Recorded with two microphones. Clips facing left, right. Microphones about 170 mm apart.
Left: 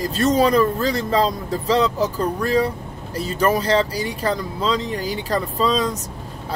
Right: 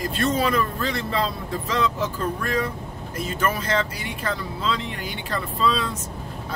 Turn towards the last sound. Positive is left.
turn(degrees=40)  # may be behind; listen again after turning